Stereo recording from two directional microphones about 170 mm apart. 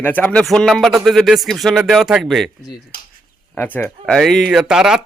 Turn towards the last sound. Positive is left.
turn(degrees=-5)  # may be behind; listen again after turning